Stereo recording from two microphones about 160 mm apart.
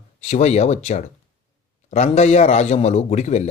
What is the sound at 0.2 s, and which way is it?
Speech, 45° left (ahead or behind).